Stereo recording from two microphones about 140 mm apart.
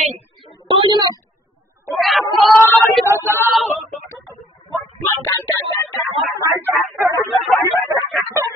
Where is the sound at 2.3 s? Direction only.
Centre (ahead or behind).